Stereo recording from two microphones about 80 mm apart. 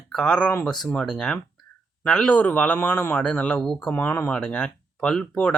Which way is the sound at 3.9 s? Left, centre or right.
Left.